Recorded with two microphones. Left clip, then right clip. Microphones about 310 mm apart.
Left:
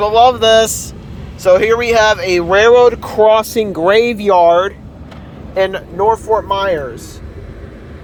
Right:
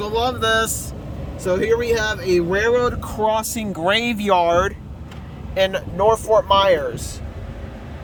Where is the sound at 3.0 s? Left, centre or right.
Centre.